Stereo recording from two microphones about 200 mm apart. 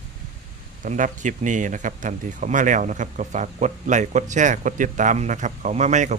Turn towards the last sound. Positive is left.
turn(degrees=-35)  # may be behind; listen again after turning